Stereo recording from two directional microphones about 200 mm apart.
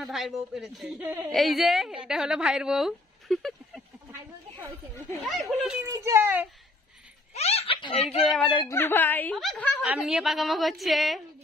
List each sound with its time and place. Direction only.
0.0 s a woman's voice: centre (ahead or behind)
5.2 s a woman's voice: centre (ahead or behind)
5.9 s a child's voice: 15° right (ahead or behind)
7.3 s a sound: 30° left (ahead or behind)
8.3 s a woman's voice: 5° left (ahead or behind)